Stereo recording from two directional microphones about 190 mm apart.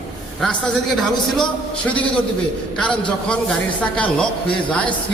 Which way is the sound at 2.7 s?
5° left (ahead or behind).